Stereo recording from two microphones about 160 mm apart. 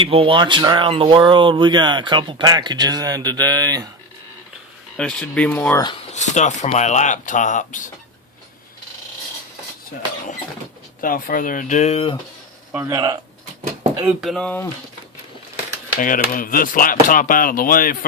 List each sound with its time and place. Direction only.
0.0 s speech: 35° right (ahead or behind)
4.9 s speech: 5° left (ahead or behind)
6.1 s speech: 45° left (ahead or behind)
11.0 s speech: 60° left (ahead or behind); by 12.1 s 40° left (ahead or behind)
12.7 s speech: 20° right (ahead or behind)
14.2 s speech: centre (ahead or behind)
16.0 s speech: 60° left (ahead or behind)